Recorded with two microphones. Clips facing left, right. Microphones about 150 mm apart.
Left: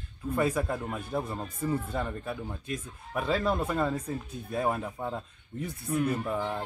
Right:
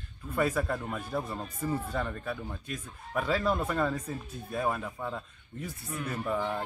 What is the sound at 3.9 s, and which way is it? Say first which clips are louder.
Speech: left 3 dB; 30° left (ahead or behind).